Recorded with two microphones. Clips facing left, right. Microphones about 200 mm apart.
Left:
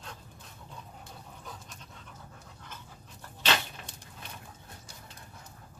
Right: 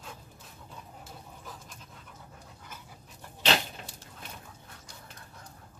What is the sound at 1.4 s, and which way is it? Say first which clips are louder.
Pant: even; centre (ahead or behind).